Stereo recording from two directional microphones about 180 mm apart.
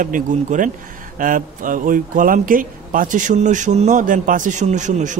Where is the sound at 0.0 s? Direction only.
45° right (ahead or behind).